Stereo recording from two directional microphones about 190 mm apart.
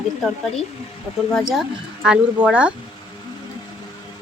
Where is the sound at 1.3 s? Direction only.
Centre (ahead or behind).